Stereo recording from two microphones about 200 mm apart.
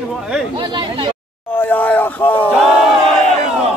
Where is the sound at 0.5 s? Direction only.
25° right (ahead or behind).